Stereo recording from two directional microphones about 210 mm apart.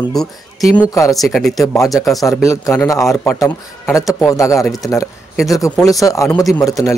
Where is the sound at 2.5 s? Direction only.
15° left (ahead or behind).